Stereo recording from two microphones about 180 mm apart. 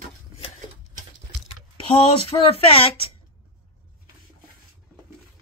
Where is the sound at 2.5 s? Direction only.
30° left (ahead or behind).